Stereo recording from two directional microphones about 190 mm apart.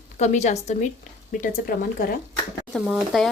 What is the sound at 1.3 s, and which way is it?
Speech, 45° left (ahead or behind).